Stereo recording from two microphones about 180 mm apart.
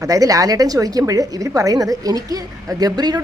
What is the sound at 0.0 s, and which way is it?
A woman's voice, 20° right (ahead or behind).